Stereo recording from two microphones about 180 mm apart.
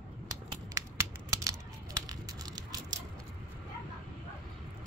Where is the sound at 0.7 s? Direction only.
15° right (ahead or behind).